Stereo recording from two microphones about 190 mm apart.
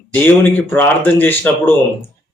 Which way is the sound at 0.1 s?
10° left (ahead or behind).